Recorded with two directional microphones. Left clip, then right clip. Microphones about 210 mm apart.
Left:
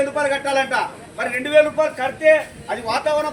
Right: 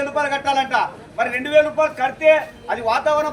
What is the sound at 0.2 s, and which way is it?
A man's voice, 10° right (ahead or behind).